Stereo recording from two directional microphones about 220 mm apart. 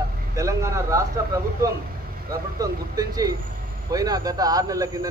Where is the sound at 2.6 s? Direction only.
15° right (ahead or behind).